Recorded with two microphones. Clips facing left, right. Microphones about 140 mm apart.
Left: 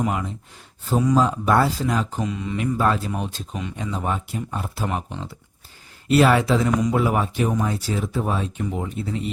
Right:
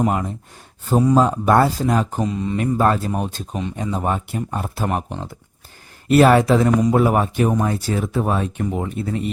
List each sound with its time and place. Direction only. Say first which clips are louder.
0.0 s speech: right 4 dB; 40° right (ahead or behind)